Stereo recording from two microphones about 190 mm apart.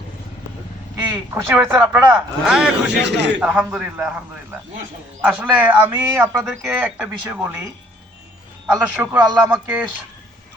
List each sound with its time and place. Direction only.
1.1 s speech: 10° right (ahead or behind)
3.0 s a man's voice: 65° right (ahead or behind)
3.4 s speech: 5° right (ahead or behind)
5.2 s speech: 10° right (ahead or behind)
8.6 s speech: 10° right (ahead or behind)